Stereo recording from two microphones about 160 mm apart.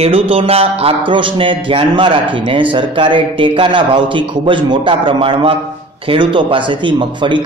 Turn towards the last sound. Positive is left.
turn(degrees=-30)  # may be behind; listen again after turning